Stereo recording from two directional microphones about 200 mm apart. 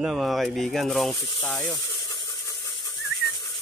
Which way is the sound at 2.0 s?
20° left (ahead or behind).